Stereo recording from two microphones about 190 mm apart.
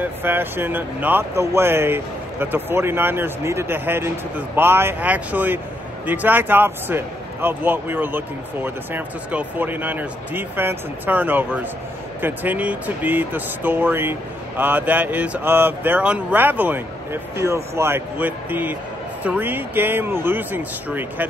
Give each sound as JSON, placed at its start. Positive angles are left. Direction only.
{"t": 0.0, "sound": "speech", "side_deg": -10}